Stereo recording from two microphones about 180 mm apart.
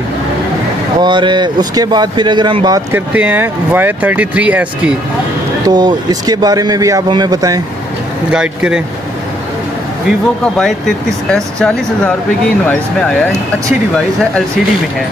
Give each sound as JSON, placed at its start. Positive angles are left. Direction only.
{"t": 1.0, "sound": "speech", "side_deg": -25}
{"t": 2.9, "sound": "speech", "side_deg": -10}
{"t": 5.7, "sound": "speech", "side_deg": -25}
{"t": 8.3, "sound": "speech", "side_deg": -5}
{"t": 10.0, "sound": "speech", "side_deg": 0}